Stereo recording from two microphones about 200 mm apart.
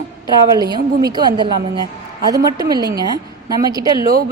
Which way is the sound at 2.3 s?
20° right (ahead or behind).